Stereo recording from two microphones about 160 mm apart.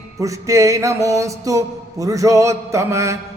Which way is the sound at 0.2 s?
20° right (ahead or behind).